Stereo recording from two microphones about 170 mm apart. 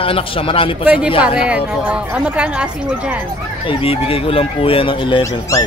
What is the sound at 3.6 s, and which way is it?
Speech, 35° left (ahead or behind).